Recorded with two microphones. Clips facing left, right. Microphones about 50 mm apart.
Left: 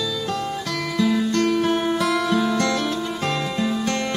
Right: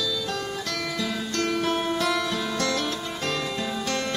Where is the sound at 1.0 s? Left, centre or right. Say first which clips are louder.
Left 11 dB; centre.